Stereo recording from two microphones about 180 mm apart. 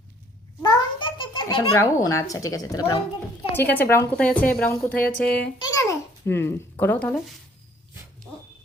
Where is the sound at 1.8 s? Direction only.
15° left (ahead or behind).